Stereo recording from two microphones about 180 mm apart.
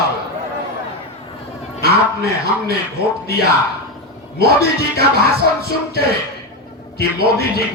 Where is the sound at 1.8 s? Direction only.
60° right (ahead or behind).